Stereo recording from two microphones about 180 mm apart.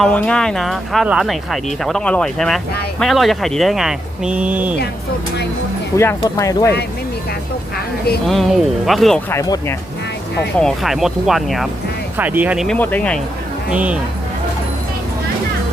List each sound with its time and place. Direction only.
0.0 s speech: 5° left (ahead or behind)
6.0 s speech: 15° left (ahead or behind)
8.3 s speech: centre (ahead or behind)
9.3 s speech: 15° left (ahead or behind)
10.6 s speech: centre (ahead or behind)
12.6 s speech: 10° left (ahead or behind)
13.7 s speech: 5° right (ahead or behind)